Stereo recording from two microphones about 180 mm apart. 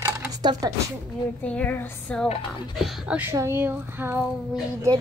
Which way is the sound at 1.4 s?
10° left (ahead or behind).